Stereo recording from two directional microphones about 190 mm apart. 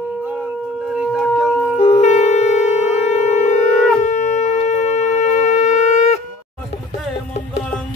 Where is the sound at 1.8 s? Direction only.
35° left (ahead or behind).